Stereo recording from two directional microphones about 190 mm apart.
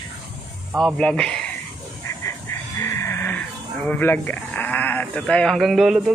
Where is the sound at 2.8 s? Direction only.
15° left (ahead or behind); by 6.1 s centre (ahead or behind).